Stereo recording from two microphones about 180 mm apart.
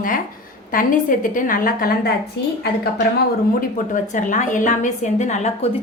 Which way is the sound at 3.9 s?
45° left (ahead or behind).